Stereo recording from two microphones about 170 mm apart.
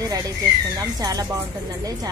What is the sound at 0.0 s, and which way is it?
A woman's voice, 20° right (ahead or behind).